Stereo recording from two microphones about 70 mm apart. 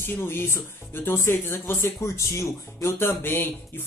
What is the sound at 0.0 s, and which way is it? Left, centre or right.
Speech, left.